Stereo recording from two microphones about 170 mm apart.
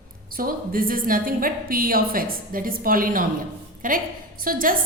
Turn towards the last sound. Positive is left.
turn(degrees=-55)  # may be behind; listen again after turning